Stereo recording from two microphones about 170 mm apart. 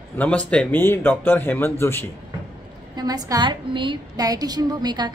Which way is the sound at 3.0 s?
20° right (ahead or behind).